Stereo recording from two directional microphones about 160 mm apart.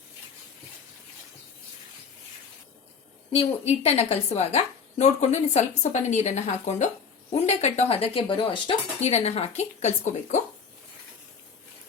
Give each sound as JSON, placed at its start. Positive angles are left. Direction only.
{"t": 3.3, "sound": "a woman's voice", "side_deg": 40}